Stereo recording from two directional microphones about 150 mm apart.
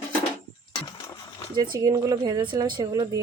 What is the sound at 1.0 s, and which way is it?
Splash, 25° left (ahead or behind).